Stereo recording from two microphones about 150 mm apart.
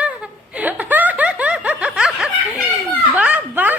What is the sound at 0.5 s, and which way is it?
Snicker, 10° right (ahead or behind).